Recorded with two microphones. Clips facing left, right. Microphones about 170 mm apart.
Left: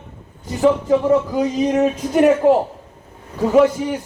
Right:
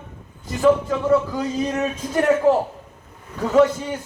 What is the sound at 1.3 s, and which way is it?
Speech, 15° left (ahead or behind).